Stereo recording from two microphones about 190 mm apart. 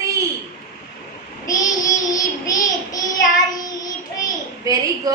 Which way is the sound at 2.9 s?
20° left (ahead or behind).